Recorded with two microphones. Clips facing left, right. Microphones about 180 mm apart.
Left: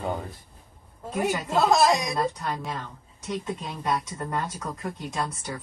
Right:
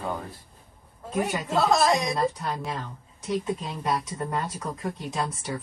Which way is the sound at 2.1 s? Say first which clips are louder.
Right 1 dB; centre (ahead or behind).